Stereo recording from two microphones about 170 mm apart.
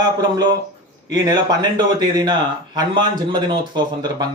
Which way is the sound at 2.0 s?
25° right (ahead or behind).